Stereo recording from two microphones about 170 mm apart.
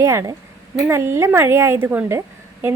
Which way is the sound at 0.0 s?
15° right (ahead or behind).